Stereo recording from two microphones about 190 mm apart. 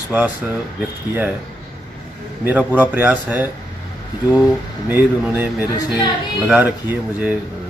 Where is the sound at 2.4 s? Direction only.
10° right (ahead or behind).